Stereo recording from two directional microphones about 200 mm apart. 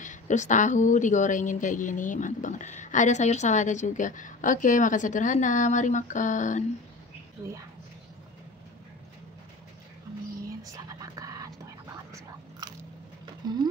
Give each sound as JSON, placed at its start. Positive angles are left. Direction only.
{"t": 0.0, "sound": "a woman's voice", "side_deg": 40}
{"t": 7.4, "sound": "speech", "side_deg": -15}
{"t": 10.6, "sound": "whispering", "side_deg": -15}
{"t": 13.4, "sound": "a sound", "side_deg": -20}